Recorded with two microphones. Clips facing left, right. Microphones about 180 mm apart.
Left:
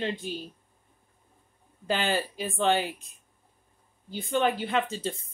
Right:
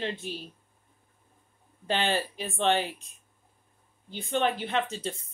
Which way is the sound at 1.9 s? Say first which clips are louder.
Even; 30° right (ahead or behind).